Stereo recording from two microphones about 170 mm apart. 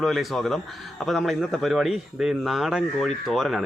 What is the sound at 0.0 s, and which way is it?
A man's voice, centre (ahead or behind).